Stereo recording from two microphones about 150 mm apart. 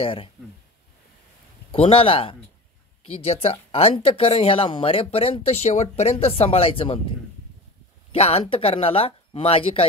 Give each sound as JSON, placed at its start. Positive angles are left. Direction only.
{"t": 0.0, "sound": "speech", "side_deg": 35}
{"t": 1.7, "sound": "speech", "side_deg": 40}
{"t": 8.1, "sound": "speech", "side_deg": 40}